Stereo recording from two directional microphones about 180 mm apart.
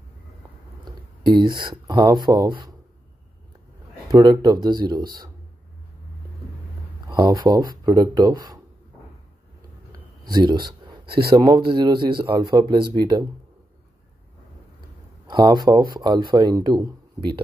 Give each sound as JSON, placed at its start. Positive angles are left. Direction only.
{"t": 0.8, "sound": "speech", "side_deg": -25}
{"t": 4.1, "sound": "speech", "side_deg": -20}
{"t": 7.1, "sound": "speech", "side_deg": -20}
{"t": 10.3, "sound": "speech", "side_deg": -25}
{"t": 15.2, "sound": "speech", "side_deg": -25}